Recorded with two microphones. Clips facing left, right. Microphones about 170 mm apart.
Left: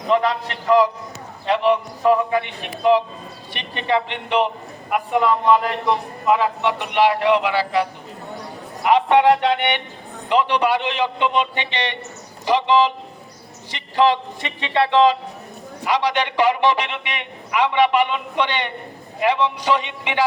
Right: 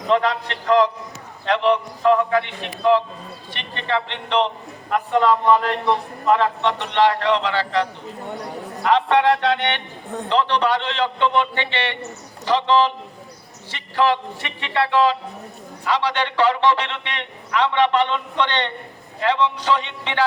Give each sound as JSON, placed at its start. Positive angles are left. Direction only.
{"t": 0.1, "sound": "a man's voice", "side_deg": 10}